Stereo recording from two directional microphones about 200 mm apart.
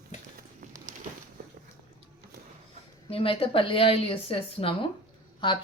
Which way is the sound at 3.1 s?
25° left (ahead or behind).